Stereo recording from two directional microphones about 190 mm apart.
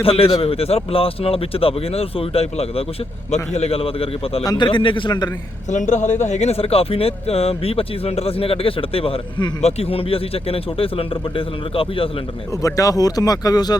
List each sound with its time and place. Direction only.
0.0 s speech: 30° left (ahead or behind)
5.7 s speech: 40° left (ahead or behind)
12.6 s speech: 20° left (ahead or behind)